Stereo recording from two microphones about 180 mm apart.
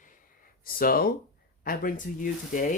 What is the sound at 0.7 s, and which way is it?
A man's voice, 55° left (ahead or behind).